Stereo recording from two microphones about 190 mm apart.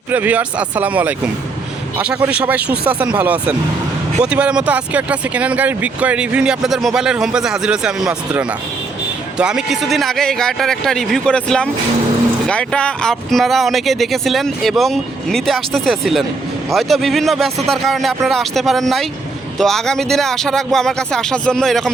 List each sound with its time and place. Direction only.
0.1 s speech: 10° right (ahead or behind)